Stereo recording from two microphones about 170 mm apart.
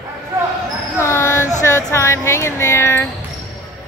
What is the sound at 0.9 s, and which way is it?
Speech, 15° left (ahead or behind).